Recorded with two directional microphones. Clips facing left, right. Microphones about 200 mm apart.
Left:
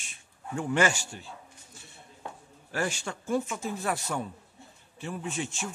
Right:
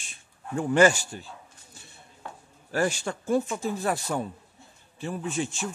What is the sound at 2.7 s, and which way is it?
Speech, 40° right (ahead or behind).